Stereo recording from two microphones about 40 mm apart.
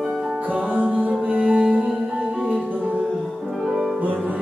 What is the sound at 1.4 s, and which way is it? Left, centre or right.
Music, right.